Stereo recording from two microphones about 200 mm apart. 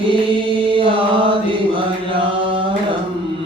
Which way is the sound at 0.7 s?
25° right (ahead or behind).